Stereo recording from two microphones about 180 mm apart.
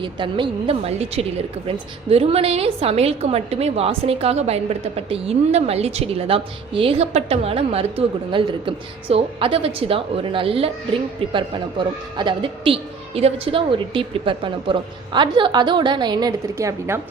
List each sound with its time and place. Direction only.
0.0 s a woman's voice: 25° right (ahead or behind)